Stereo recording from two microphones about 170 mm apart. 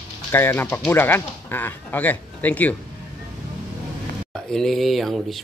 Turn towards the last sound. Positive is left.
turn(degrees=0)  # may be behind; listen again after turning